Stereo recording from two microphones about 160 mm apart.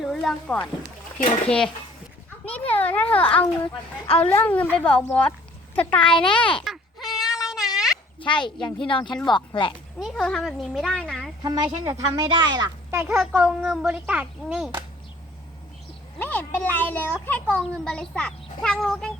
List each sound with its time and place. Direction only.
0.0 s a child's voice: centre (ahead or behind)
2.4 s children playing: 10° left (ahead or behind)
4.2 s a woman's voice: 10° left (ahead or behind)
5.7 s a sound: 10° left (ahead or behind)
8.2 s speech: 30° left (ahead or behind)
10.0 s a child's voice: centre (ahead or behind)
11.4 s speech: 20° right (ahead or behind)
13.1 s a child's voice: 5° right (ahead or behind)
16.1 s a child's voice: 10° left (ahead or behind)